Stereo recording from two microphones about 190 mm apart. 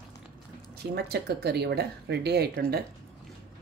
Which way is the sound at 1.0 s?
60° right (ahead or behind).